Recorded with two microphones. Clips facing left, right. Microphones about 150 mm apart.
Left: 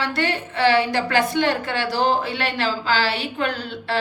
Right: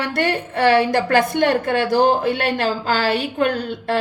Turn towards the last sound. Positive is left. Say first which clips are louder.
# right 5 dB
turn(degrees=-45)  # may be behind; listen again after turning